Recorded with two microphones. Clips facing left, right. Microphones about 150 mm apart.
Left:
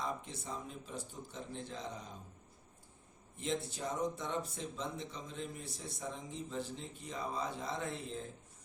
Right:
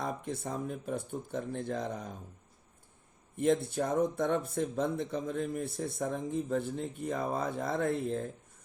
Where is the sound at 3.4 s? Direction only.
55° right (ahead or behind).